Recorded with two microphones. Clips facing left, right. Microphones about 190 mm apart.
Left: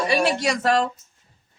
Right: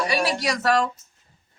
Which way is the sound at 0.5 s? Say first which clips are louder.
Left 1 dB; 30° left (ahead or behind).